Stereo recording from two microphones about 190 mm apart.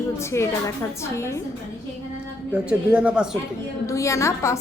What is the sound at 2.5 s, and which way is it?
Speech, 5° right (ahead or behind).